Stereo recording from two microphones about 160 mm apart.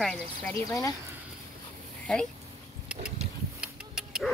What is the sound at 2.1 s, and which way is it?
Speech, 5° left (ahead or behind).